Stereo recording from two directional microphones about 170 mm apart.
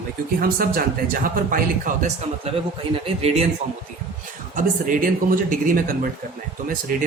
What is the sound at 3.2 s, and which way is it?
Speech, 40° right (ahead or behind).